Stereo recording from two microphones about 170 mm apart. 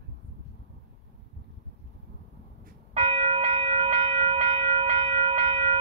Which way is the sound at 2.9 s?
35° right (ahead or behind).